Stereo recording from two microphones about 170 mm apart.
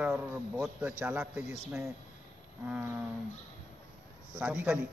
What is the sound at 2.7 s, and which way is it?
Speech, 10° right (ahead or behind).